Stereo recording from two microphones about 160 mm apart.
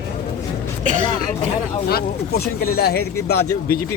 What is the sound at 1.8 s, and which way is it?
Speech, 80° left.